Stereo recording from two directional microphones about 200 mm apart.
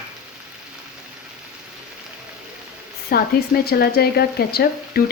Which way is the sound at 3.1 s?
50° left (ahead or behind).